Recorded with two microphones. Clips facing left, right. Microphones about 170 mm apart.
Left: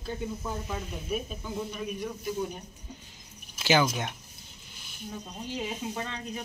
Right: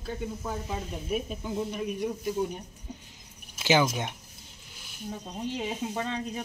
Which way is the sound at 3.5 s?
20° right (ahead or behind).